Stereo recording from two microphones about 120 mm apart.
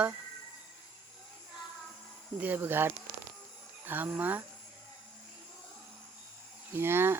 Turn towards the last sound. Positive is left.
turn(degrees=-20)  # may be behind; listen again after turning